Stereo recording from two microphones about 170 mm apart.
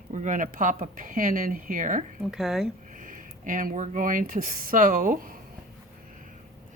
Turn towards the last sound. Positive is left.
turn(degrees=-55)  # may be behind; listen again after turning